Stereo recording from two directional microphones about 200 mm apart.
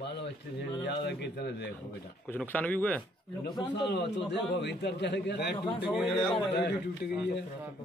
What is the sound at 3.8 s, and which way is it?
A man's voice, 60° left (ahead or behind).